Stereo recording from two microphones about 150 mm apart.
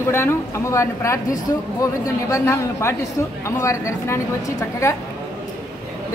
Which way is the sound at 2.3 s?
20° left (ahead or behind).